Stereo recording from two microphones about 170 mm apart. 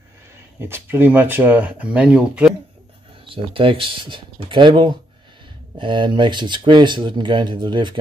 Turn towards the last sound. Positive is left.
turn(degrees=-25)  # may be behind; listen again after turning